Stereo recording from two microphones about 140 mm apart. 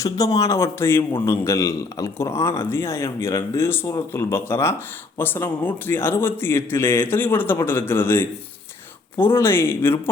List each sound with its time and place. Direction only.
0.0 s a man's voice: 25° left (ahead or behind)